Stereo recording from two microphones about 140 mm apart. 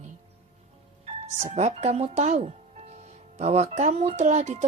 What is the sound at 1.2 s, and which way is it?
A woman's voice, 55° right (ahead or behind).